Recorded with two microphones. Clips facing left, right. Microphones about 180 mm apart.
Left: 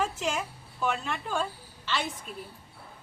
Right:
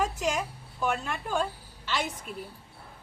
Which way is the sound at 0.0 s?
15° right (ahead or behind).